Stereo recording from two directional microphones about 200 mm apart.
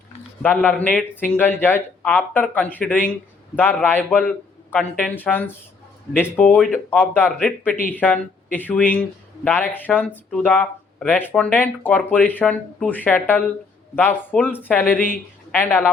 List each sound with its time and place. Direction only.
0.4 s speech: 10° left (ahead or behind)
14.9 s speech: 45° left (ahead or behind)
15.5 s speech: 10° left (ahead or behind)